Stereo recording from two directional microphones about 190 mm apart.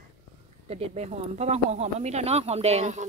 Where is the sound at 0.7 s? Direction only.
35° right (ahead or behind).